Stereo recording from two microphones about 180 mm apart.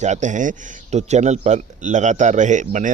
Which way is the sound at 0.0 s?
40° right (ahead or behind).